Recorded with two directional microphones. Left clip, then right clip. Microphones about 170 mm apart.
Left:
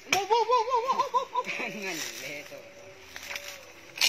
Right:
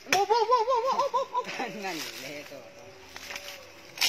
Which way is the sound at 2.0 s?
60° left (ahead or behind).